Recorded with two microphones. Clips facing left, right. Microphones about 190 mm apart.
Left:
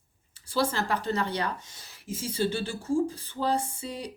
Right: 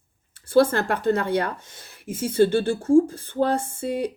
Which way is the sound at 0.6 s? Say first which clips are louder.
Right 9 dB; 55° right (ahead or behind).